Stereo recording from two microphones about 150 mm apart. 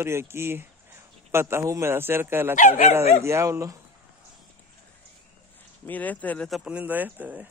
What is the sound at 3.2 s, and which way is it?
Speech, 20° right (ahead or behind).